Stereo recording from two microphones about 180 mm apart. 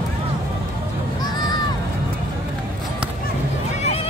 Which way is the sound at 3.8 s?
35° left (ahead or behind).